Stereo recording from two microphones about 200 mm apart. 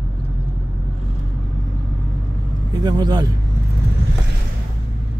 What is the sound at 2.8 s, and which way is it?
Speech, 20° right (ahead or behind).